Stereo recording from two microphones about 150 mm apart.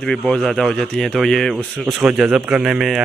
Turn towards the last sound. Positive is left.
turn(degrees=-5)  # may be behind; listen again after turning